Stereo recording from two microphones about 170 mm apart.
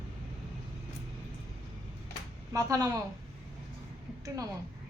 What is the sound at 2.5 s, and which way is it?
Speech, 20° right (ahead or behind).